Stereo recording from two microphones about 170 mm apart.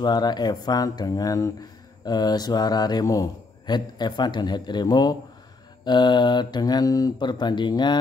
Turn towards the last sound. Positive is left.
turn(degrees=25)  # may be behind; listen again after turning